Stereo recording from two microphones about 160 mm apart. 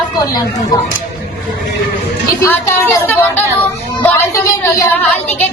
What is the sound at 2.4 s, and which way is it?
Child singing, 15° left (ahead or behind).